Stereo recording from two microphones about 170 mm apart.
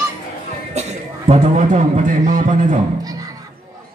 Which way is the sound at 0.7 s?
40° right (ahead or behind).